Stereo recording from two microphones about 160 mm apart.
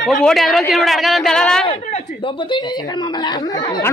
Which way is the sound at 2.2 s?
30° left (ahead or behind).